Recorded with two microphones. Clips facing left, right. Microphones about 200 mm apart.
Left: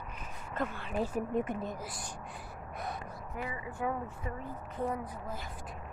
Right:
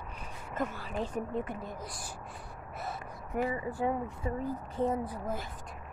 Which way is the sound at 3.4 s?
35° right (ahead or behind).